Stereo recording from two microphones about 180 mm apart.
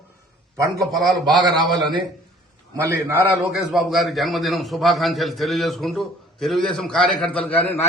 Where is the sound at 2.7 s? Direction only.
15° right (ahead or behind).